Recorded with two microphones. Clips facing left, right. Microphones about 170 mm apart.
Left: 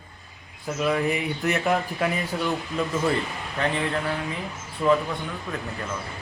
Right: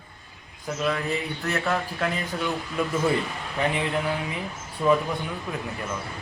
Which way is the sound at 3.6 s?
15° right (ahead or behind).